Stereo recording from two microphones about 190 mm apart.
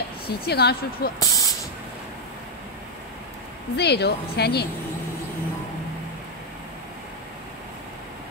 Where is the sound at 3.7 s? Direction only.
60° left (ahead or behind).